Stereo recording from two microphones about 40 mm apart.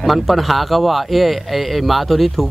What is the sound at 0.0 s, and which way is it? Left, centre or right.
Speech, centre.